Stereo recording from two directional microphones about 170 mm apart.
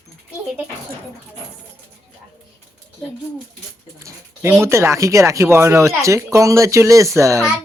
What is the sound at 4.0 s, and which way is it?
Speech, 15° right (ahead or behind).